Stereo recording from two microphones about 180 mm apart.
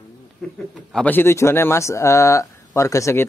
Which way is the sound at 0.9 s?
10° left (ahead or behind).